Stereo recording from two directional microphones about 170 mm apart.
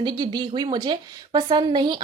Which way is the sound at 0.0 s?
25° right (ahead or behind).